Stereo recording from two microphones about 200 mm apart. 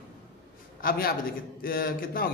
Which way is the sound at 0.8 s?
45° left (ahead or behind).